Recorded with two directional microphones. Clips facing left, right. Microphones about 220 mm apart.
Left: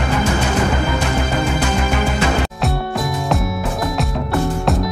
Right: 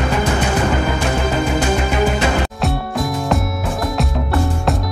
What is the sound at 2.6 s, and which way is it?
Music, centre (ahead or behind).